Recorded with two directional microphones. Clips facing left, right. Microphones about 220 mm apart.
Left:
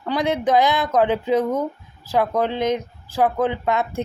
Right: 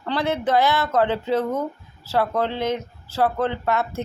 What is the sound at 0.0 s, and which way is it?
Speech, 15° left (ahead or behind).